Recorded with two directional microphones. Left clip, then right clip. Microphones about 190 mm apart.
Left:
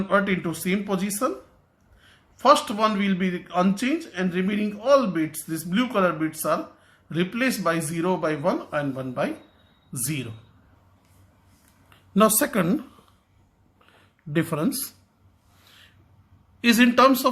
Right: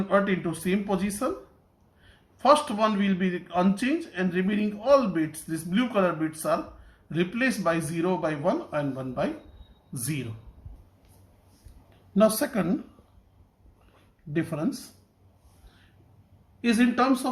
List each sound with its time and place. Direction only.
0.1 s a man's voice: 20° left (ahead or behind)
12.1 s speech: 35° left (ahead or behind)
14.3 s speech: 40° left (ahead or behind)
16.6 s speech: 45° left (ahead or behind)